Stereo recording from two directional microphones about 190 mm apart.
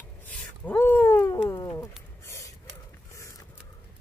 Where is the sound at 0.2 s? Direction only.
10° left (ahead or behind).